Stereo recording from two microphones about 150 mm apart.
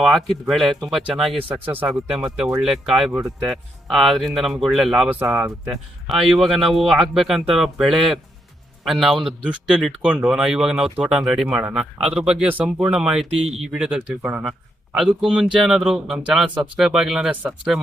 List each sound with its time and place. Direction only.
0.0 s speech: centre (ahead or behind)
5.2 s speech: 15° right (ahead or behind)
6.1 s speech: centre (ahead or behind)